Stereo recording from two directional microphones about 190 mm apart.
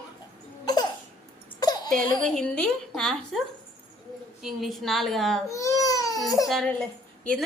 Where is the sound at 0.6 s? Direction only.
20° left (ahead or behind).